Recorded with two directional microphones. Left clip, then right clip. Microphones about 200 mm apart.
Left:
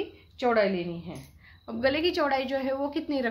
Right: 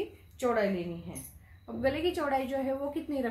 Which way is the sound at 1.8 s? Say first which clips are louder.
Left 5 dB; 45° left (ahead or behind).